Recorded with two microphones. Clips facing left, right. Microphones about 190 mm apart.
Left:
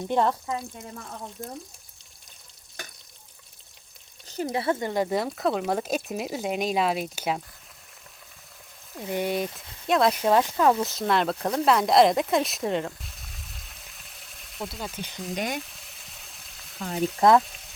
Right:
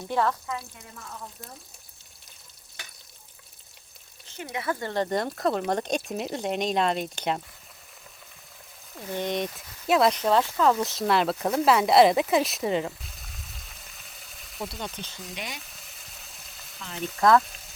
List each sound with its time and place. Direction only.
0.1 s speech: 20° left (ahead or behind)
4.3 s speech: 40° left (ahead or behind)
4.8 s speech: 10° left (ahead or behind)
9.0 s speech: 15° left (ahead or behind); by 10.1 s 5° right (ahead or behind)
10.1 s speech: 10° left (ahead or behind)
10.8 s speech: centre (ahead or behind)
15.4 s speech: 50° left (ahead or behind)
15.6 s frying: centre (ahead or behind)
16.7 s speech: 45° left (ahead or behind)
17.2 s speech: 20° left (ahead or behind)
17.4 s speech: centre (ahead or behind)